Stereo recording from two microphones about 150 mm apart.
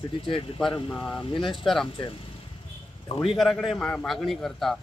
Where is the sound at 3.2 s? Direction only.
Centre (ahead or behind).